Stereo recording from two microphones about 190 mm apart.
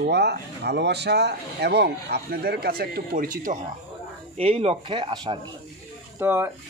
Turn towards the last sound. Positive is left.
turn(degrees=-10)  # may be behind; listen again after turning